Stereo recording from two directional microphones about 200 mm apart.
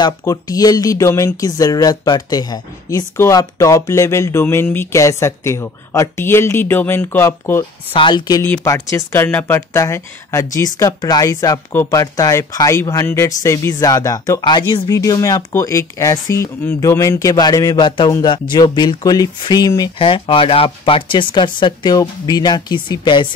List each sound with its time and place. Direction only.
0.0 s speech: 15° left (ahead or behind)
7.9 s speech: 25° left (ahead or behind)